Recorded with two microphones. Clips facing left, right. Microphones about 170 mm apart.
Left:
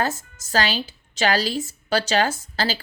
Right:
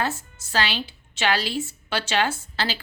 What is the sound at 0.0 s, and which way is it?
A woman's voice, 40° left (ahead or behind).